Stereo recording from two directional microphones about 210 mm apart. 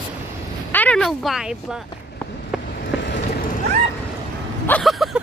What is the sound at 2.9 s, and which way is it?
Vehicle, 55° left (ahead or behind).